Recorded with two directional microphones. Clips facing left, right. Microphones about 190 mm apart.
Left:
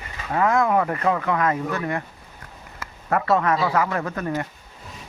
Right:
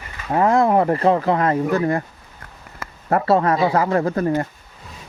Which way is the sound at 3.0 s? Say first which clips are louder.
Right 4 dB; 30° right (ahead or behind).